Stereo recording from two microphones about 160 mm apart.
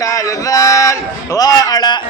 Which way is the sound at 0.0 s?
20° left (ahead or behind).